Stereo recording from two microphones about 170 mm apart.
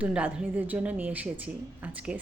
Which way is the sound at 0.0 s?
5° right (ahead or behind).